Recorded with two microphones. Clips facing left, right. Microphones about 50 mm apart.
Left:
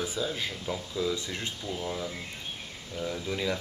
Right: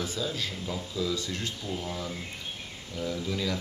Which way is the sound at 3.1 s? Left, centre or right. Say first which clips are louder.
Even; left.